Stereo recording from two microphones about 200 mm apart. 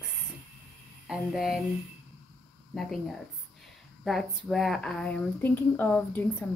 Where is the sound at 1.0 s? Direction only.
5° right (ahead or behind).